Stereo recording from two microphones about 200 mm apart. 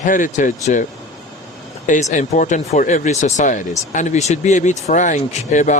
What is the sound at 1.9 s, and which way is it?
Speech, 40° left (ahead or behind).